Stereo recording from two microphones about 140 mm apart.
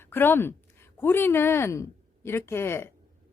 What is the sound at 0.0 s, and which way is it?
A woman's voice, 15° left (ahead or behind).